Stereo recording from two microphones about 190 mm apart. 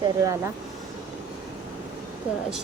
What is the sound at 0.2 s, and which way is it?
Speech, 15° right (ahead or behind).